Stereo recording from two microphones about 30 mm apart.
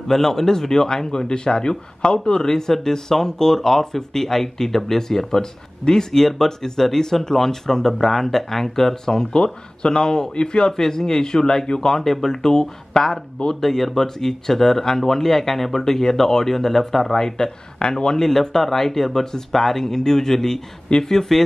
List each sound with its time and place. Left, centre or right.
0.1 s speech: centre
10.3 s a man's voice: left
10.8 s speech: centre
12.0 s speech: centre
17.8 s speech: left
18.2 s speech: centre